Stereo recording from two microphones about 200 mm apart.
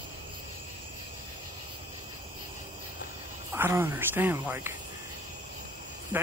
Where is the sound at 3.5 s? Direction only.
10° right (ahead or behind).